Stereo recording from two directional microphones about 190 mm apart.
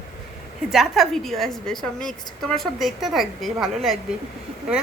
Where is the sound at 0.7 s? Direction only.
Centre (ahead or behind).